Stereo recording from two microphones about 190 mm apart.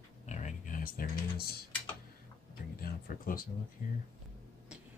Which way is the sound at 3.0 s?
50° left (ahead or behind).